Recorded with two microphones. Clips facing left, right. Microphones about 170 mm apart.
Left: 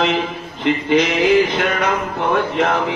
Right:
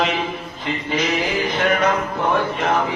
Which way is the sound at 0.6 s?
70° left (ahead or behind).